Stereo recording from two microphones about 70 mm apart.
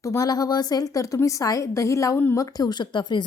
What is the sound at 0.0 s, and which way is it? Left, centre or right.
A woman's voice, left.